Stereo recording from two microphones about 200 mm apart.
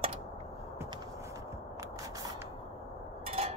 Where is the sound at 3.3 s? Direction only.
30° right (ahead or behind).